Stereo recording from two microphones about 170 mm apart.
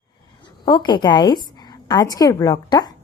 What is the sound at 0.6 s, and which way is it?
A woman's voice, 25° left (ahead or behind).